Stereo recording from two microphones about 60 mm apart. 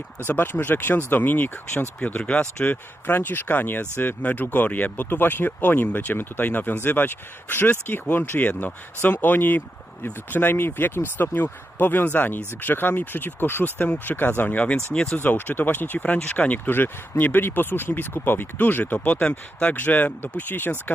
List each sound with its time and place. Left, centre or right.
0.3 s speech: left; by 2.6 s centre
2.6 s speech: left; by 15.2 s centre
15.2 s speech: left